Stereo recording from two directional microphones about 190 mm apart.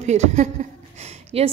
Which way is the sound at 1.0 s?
35° right (ahead or behind).